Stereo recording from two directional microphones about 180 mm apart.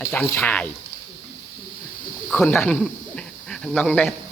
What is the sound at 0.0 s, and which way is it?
Speech, 10° left (ahead or behind).